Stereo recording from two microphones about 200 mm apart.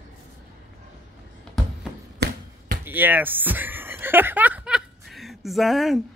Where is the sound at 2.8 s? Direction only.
10° right (ahead or behind).